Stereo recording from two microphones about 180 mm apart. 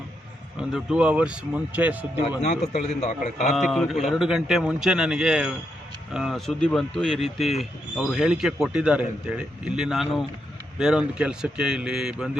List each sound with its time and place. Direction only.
0.7 s a man's voice: 5° right (ahead or behind)
2.4 s a man's voice: 40° left (ahead or behind)
3.5 s speech: centre (ahead or behind)